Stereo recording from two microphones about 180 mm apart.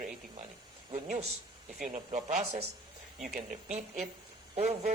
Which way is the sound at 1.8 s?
50° right (ahead or behind).